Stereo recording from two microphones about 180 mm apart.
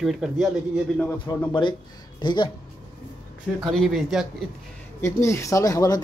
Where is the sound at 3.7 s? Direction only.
Centre (ahead or behind).